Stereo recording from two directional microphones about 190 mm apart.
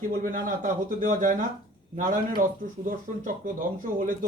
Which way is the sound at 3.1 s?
40° right (ahead or behind).